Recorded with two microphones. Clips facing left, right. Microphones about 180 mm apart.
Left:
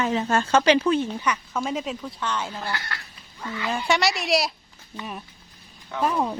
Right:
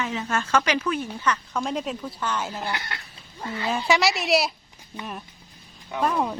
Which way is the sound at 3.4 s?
35° right (ahead or behind).